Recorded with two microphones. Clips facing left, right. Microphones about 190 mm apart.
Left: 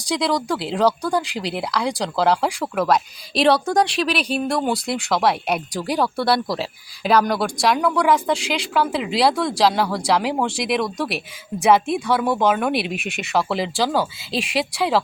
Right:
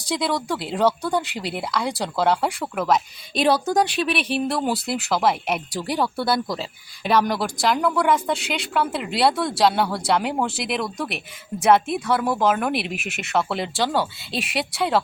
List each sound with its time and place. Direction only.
0.1 s speech: centre (ahead or behind)